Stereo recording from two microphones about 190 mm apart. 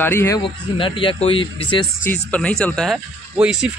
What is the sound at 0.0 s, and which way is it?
Speech, 15° left (ahead or behind).